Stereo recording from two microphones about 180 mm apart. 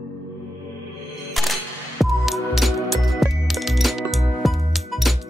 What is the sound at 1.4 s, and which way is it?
Music, centre (ahead or behind).